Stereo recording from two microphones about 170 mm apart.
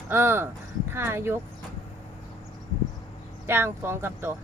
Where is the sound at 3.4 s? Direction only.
15° right (ahead or behind).